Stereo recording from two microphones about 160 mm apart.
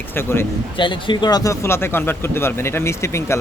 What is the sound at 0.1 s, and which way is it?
Speech, 15° left (ahead or behind).